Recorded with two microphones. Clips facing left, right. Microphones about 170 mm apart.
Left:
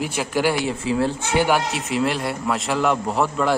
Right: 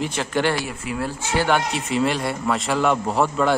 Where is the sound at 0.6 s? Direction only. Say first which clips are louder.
Left 6 dB; 25° left (ahead or behind).